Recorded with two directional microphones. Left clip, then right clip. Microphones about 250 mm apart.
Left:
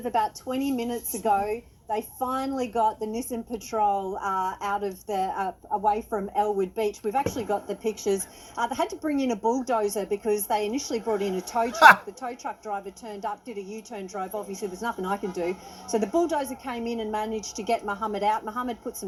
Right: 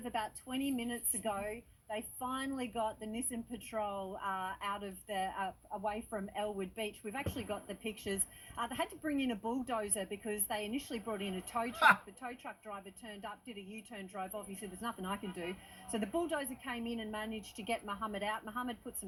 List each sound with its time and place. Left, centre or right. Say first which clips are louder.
0.0 s a woman's voice: left 14 dB; right